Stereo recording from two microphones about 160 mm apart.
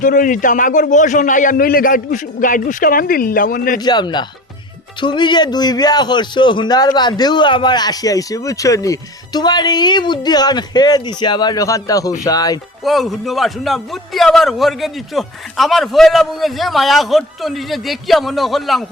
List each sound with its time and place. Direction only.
0.0 s a man's voice: 55° left (ahead or behind)
3.8 s a man's voice: 25° left (ahead or behind)
12.8 s a man's voice: centre (ahead or behind)